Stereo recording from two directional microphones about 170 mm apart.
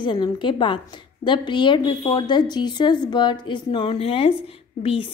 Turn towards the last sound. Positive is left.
turn(degrees=35)  # may be behind; listen again after turning